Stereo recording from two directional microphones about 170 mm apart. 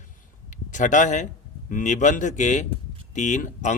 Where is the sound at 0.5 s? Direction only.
45° left (ahead or behind).